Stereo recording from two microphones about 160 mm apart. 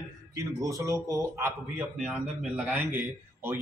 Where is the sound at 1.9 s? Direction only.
5° right (ahead or behind).